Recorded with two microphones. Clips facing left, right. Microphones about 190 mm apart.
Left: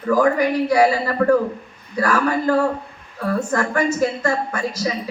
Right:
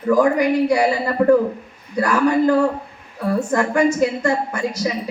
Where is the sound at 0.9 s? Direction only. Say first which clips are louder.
Right 2 dB; 20° right (ahead or behind).